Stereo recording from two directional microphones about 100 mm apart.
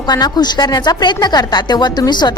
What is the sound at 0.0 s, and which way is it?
A woman's voice, 45° left (ahead or behind).